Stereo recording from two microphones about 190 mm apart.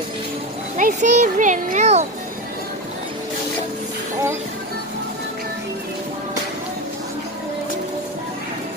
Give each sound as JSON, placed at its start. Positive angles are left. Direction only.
{"t": 0.7, "sound": "speech", "side_deg": -40}